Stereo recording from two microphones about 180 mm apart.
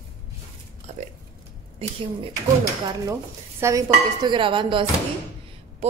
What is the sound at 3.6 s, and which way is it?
Dishes, 20° right (ahead or behind).